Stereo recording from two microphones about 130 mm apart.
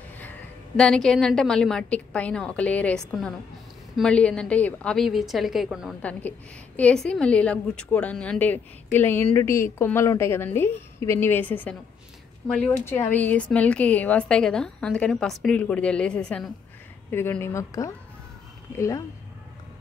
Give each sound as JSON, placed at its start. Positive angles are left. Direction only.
{"t": 0.7, "sound": "a woman's voice", "side_deg": 5}
{"t": 6.8, "sound": "a woman's voice", "side_deg": 5}
{"t": 17.1, "sound": "a woman's voice", "side_deg": 15}